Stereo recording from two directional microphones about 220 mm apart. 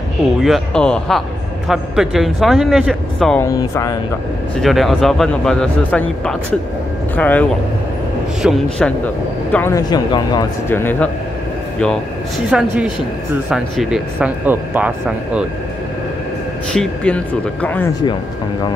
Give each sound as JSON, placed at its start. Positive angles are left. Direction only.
{"t": 0.4, "sound": "speech", "side_deg": 0}
{"t": 3.4, "sound": "speech", "side_deg": 15}
{"t": 4.6, "sound": "speech", "side_deg": 0}
{"t": 12.4, "sound": "speech", "side_deg": -5}
{"t": 16.7, "sound": "speech", "side_deg": 5}